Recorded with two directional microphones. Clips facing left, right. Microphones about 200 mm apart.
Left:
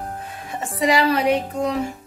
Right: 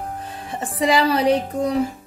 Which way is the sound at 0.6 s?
30° right (ahead or behind).